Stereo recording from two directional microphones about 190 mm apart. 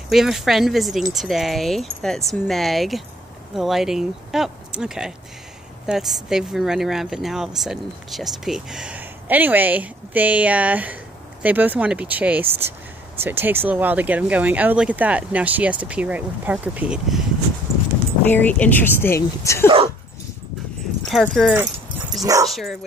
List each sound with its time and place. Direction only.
0.1 s speech: centre (ahead or behind)
18.3 s speech: 10° left (ahead or behind)
21.1 s speech: centre (ahead or behind)
22.2 s speech: 20° right (ahead or behind)
22.5 s speech: centre (ahead or behind)